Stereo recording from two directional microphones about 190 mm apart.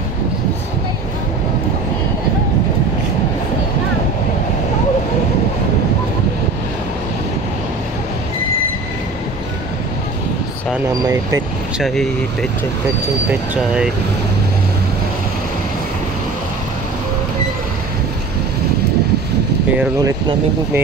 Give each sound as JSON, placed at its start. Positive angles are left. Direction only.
{"t": 11.8, "sound": "speech", "side_deg": 0}
{"t": 20.0, "sound": "speech", "side_deg": -15}